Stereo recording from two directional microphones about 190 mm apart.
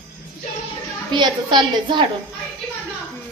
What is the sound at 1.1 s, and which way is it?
Speech, 25° right (ahead or behind).